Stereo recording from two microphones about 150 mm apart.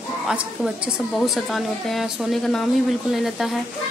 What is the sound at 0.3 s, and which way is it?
A woman's voice, 5° right (ahead or behind).